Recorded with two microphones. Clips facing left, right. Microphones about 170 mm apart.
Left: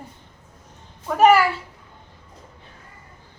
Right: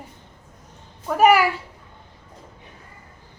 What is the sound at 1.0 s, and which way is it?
Speech, 10° right (ahead or behind).